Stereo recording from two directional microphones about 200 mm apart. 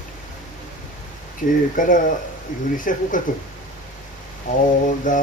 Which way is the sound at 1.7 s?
40° left (ahead or behind).